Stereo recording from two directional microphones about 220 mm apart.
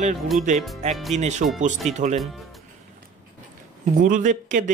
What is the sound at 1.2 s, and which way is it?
Speech, 30° right (ahead or behind).